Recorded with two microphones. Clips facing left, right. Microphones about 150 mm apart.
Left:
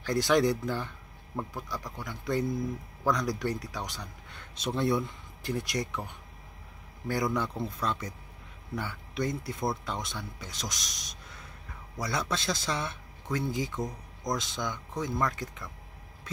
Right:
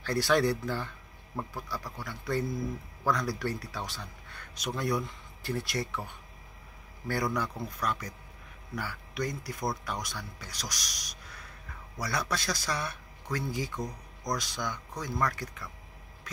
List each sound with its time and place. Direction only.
0.0 s speech: 20° left (ahead or behind)
7.3 s speech: 25° left (ahead or behind)